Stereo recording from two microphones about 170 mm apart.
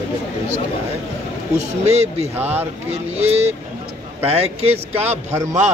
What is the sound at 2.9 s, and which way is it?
Speech, 40° right (ahead or behind).